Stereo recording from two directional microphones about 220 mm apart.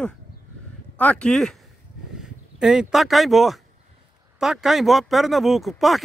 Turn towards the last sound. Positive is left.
turn(degrees=0)  # may be behind; listen again after turning